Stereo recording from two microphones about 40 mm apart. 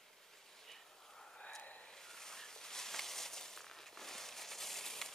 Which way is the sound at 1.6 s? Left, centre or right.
Left.